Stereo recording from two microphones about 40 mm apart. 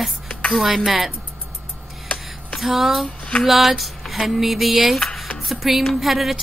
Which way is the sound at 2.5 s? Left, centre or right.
Centre.